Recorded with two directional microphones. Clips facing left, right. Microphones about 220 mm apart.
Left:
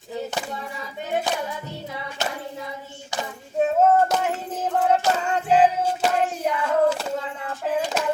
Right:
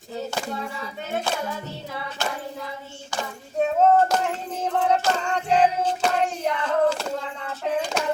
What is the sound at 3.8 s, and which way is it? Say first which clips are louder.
Female singing: right 1 dB; 5° left (ahead or behind).